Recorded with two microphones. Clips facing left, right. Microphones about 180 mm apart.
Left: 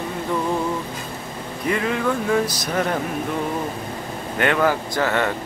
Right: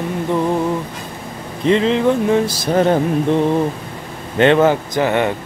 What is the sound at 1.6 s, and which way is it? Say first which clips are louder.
Speech: right 8 dB; 25° right (ahead or behind).